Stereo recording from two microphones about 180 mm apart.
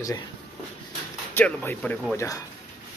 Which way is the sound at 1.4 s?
10° left (ahead or behind).